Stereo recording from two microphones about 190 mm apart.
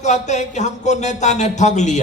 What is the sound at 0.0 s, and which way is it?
A man's voice, 40° left (ahead or behind).